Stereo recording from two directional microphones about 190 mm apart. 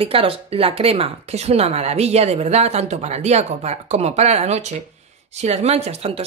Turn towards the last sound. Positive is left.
turn(degrees=-35)  # may be behind; listen again after turning